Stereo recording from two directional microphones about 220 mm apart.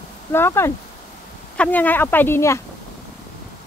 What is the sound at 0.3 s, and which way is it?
Speech, 10° left (ahead or behind).